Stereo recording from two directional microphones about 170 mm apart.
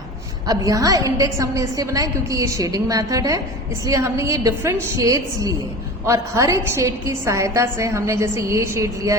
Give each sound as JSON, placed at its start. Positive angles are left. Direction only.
{"t": 0.4, "sound": "a woman's voice", "side_deg": -20}